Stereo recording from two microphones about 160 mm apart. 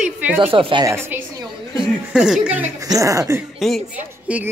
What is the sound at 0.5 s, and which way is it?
Speech, 35° right (ahead or behind).